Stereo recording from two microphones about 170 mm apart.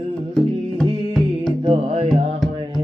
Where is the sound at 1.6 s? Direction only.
35° right (ahead or behind).